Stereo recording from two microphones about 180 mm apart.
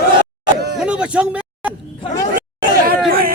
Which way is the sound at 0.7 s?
5° right (ahead or behind).